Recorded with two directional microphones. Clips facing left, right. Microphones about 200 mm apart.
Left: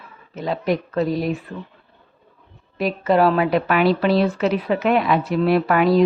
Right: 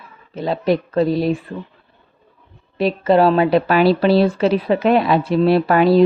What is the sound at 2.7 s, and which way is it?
A woman's voice, 30° right (ahead or behind).